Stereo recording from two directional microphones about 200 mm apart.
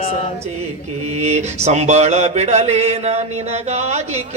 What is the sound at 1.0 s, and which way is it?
Mantra, 35° right (ahead or behind).